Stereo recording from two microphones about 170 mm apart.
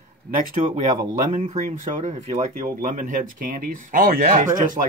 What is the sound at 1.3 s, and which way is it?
Speech, 45° right (ahead or behind).